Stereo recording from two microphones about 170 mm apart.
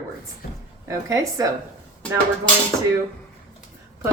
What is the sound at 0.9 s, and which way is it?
Speech, 20° right (ahead or behind).